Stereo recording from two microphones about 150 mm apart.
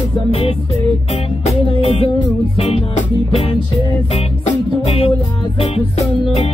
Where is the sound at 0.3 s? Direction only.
40° left (ahead or behind).